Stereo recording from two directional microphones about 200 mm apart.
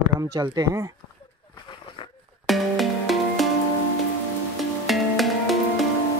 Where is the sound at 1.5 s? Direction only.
25° left (ahead or behind).